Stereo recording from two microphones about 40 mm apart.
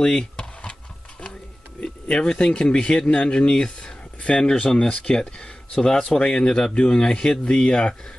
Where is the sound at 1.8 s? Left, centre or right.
Left.